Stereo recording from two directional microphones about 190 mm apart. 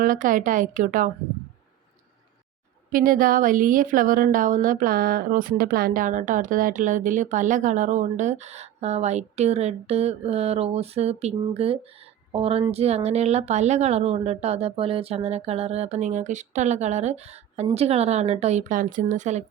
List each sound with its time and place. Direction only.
0.0 s a woman's voice: 45° right (ahead or behind)
2.9 s a woman's voice: 45° right (ahead or behind)